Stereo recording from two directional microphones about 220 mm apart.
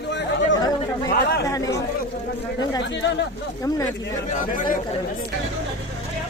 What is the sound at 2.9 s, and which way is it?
Speech, 50° left (ahead or behind).